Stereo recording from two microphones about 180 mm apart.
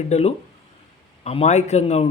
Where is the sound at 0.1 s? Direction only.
35° left (ahead or behind).